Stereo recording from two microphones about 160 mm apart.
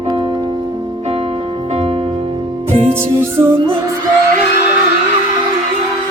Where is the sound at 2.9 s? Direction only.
15° right (ahead or behind).